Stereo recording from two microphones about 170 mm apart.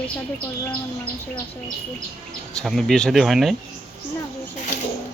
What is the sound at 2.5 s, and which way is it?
Speech, centre (ahead or behind).